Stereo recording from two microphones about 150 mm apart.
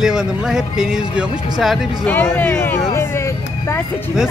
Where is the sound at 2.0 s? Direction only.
15° left (ahead or behind).